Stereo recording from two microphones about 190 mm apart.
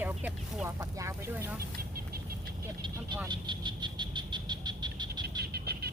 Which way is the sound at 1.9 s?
55° right (ahead or behind).